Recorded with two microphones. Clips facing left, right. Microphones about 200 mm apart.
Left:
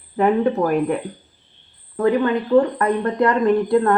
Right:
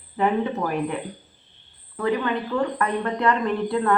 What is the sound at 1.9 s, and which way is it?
A woman's voice, 40° left (ahead or behind).